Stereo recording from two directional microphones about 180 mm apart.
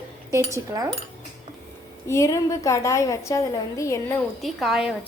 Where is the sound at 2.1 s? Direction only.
15° left (ahead or behind).